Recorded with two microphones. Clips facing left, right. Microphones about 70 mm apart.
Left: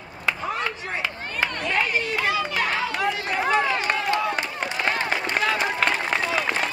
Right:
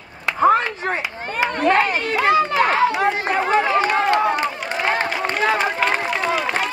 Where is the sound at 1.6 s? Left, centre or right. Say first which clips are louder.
Right 9 dB; right.